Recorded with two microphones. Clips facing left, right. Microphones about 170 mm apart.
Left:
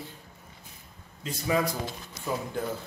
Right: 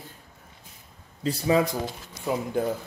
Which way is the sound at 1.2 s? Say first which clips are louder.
Right 5 dB; 30° right (ahead or behind).